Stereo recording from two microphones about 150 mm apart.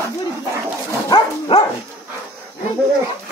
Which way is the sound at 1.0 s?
30° left (ahead or behind).